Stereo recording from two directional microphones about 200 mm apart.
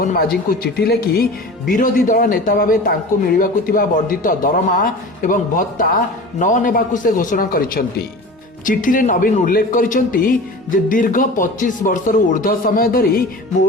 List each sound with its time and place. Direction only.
0.0 s a man's voice: 45° left (ahead or behind)